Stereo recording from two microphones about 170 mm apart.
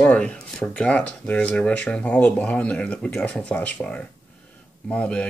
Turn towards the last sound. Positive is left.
turn(degrees=5)  # may be behind; listen again after turning